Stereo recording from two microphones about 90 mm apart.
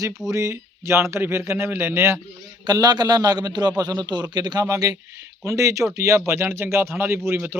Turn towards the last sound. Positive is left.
turn(degrees=-25)  # may be behind; listen again after turning